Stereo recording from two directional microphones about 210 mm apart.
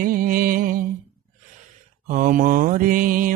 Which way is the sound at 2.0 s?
40° right (ahead or behind).